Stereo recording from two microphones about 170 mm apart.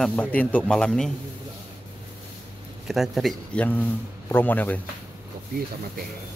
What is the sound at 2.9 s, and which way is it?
Speech, centre (ahead or behind).